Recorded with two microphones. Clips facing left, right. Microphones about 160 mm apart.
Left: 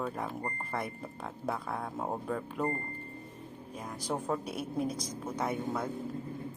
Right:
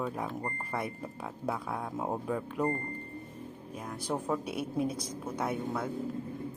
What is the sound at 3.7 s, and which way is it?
Speech, 5° right (ahead or behind).